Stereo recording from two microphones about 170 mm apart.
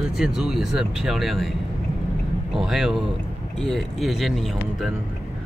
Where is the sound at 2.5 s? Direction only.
Centre (ahead or behind).